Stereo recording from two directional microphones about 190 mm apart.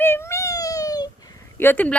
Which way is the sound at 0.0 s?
10° left (ahead or behind).